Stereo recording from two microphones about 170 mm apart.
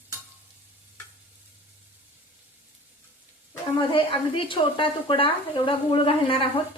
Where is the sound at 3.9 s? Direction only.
30° left (ahead or behind).